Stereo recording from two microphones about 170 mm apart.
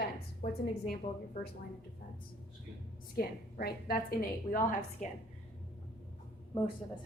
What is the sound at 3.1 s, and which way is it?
A woman's voice, 65° left (ahead or behind).